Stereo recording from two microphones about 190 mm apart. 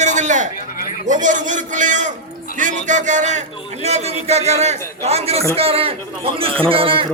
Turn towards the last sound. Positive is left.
turn(degrees=-30)  # may be behind; listen again after turning